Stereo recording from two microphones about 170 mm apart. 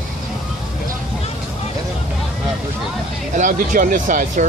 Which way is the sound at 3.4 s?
50° right (ahead or behind).